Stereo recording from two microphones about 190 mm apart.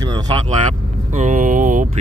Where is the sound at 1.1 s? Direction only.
40° right (ahead or behind).